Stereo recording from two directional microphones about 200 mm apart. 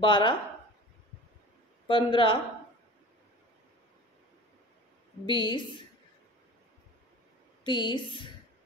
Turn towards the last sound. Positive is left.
turn(degrees=25)  # may be behind; listen again after turning